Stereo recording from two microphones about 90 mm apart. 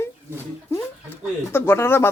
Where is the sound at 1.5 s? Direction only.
25° left (ahead or behind).